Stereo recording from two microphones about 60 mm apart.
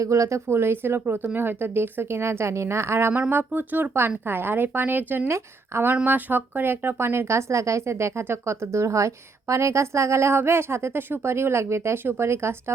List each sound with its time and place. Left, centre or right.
0.0 s a woman's voice: right
3.1 s a woman's voice: right
6.1 s a woman's voice: right